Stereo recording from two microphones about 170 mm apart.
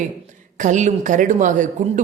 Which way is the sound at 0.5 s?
45° right (ahead or behind).